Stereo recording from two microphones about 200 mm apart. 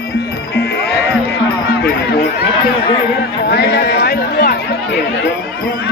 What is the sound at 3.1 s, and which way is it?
Music, 55° left (ahead or behind).